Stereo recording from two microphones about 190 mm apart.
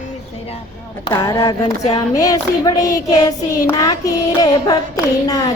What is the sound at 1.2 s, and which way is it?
Speech, 20° left (ahead or behind).